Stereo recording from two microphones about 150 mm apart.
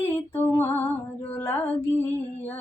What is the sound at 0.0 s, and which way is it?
Female singing, 15° left (ahead or behind).